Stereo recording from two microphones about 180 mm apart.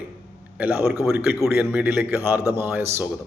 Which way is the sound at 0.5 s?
5° right (ahead or behind).